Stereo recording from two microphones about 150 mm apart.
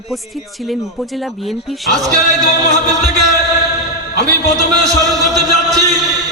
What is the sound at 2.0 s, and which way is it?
Music, 25° right (ahead or behind).